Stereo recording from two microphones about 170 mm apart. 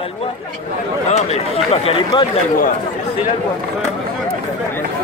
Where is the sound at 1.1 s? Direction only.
40° left (ahead or behind).